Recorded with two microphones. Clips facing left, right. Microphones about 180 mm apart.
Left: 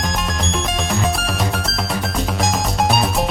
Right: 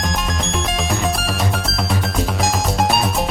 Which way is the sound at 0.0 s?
Centre (ahead or behind).